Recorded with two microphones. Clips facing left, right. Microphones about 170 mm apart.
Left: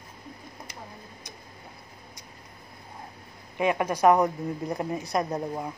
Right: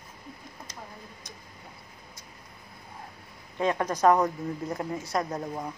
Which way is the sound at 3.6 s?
10° left (ahead or behind).